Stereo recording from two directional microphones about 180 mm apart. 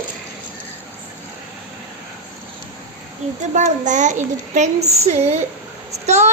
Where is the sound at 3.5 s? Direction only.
45° right (ahead or behind).